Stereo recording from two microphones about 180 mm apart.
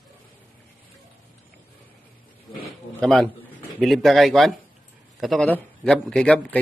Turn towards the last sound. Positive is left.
turn(degrees=5)  # may be behind; listen again after turning